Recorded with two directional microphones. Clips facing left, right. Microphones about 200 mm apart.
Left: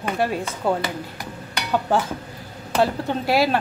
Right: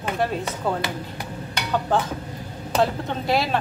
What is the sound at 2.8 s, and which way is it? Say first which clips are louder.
Speech: left 3 dB; 5° left (ahead or behind).